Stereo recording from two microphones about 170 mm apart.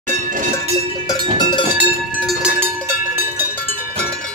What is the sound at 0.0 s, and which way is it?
Cowbell, 50° right (ahead or behind).